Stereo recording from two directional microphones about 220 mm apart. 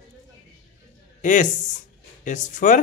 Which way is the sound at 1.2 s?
35° left (ahead or behind).